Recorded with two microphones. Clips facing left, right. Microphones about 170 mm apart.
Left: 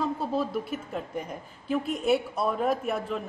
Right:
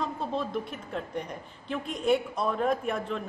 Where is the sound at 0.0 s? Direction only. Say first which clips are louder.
Left 3 dB; 5° left (ahead or behind).